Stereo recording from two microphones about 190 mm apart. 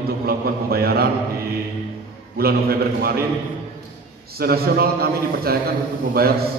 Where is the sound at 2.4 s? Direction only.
55° right (ahead or behind).